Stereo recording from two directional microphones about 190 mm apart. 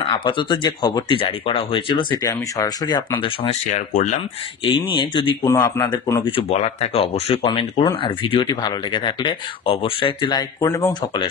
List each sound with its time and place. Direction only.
0.0 s speech: 25° left (ahead or behind)
3.7 s speech: 40° left (ahead or behind)
4.6 s speech: 25° left (ahead or behind)
6.3 s speech: 35° left (ahead or behind)